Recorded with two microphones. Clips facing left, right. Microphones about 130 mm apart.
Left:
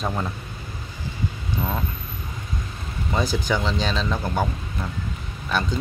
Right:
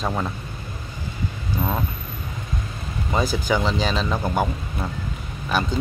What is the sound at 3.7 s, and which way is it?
Speech, 5° right (ahead or behind).